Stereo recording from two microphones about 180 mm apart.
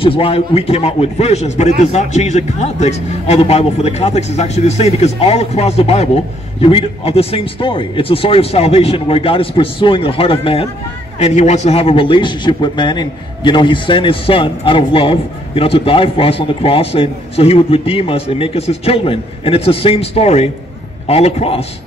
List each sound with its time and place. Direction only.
0.0 s a man's voice: 30° left (ahead or behind)